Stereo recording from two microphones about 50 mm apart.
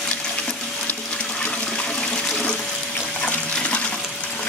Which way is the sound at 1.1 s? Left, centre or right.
Left.